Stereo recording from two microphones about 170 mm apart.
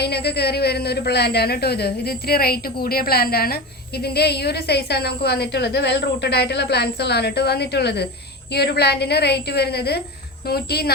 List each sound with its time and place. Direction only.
0.0 s speech: 70° left (ahead or behind)